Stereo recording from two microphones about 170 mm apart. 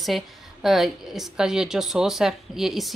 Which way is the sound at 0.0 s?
Centre (ahead or behind).